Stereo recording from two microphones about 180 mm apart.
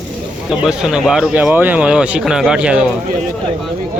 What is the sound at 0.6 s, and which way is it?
Speech, 5° right (ahead or behind).